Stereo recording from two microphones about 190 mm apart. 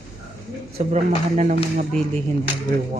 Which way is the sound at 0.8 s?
35° right (ahead or behind).